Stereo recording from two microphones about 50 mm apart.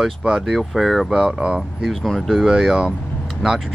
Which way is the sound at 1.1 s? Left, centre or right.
Centre.